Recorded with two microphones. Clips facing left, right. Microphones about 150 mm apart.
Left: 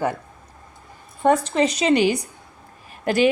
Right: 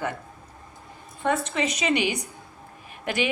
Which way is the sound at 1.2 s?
35° left (ahead or behind).